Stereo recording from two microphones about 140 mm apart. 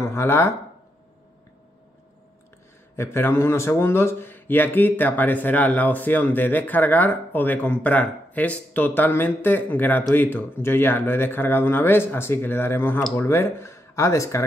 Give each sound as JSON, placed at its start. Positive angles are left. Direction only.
{"t": 0.0, "sound": "speech", "side_deg": 20}
{"t": 3.0, "sound": "a man's voice", "side_deg": 20}